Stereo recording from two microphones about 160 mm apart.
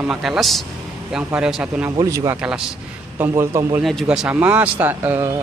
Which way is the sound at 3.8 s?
Centre (ahead or behind).